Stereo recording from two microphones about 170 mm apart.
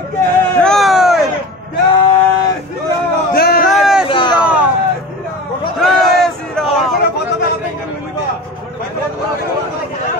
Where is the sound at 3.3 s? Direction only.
60° left (ahead or behind).